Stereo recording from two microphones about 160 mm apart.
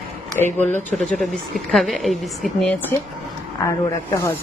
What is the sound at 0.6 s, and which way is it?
Speech, 10° left (ahead or behind).